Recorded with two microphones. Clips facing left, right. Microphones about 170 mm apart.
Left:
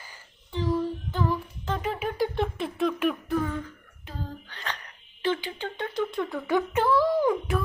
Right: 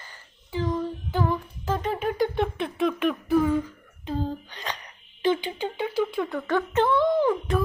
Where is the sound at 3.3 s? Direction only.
10° right (ahead or behind).